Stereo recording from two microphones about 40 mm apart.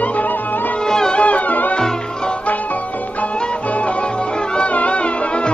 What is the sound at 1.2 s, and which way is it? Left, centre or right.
Music, left.